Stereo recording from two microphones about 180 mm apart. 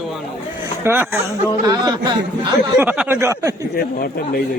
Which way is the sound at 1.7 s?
25° right (ahead or behind).